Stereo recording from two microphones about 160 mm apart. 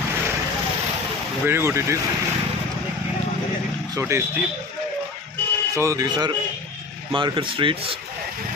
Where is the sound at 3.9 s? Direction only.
15° right (ahead or behind).